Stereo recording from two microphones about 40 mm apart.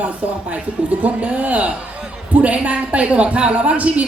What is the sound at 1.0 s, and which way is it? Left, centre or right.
Speech, right.